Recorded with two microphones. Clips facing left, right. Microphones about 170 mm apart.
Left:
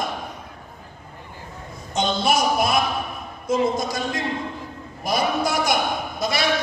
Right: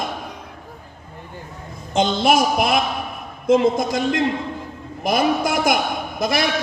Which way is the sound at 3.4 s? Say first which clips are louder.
Right 5 dB; 55° right (ahead or behind).